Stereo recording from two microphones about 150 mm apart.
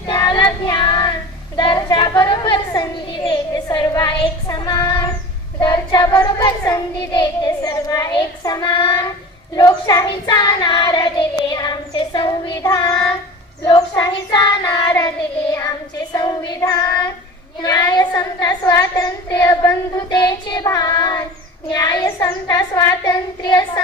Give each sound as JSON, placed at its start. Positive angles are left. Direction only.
{"t": 0.1, "sound": "child singing", "side_deg": 30}
{"t": 1.5, "sound": "a sound", "side_deg": 30}
{"t": 5.5, "sound": "child singing", "side_deg": 30}
{"t": 12.6, "sound": "child singing", "side_deg": 25}
{"t": 16.1, "sound": "child singing", "side_deg": 30}